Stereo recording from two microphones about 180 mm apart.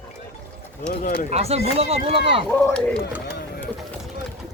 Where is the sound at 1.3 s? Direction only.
35° right (ahead or behind).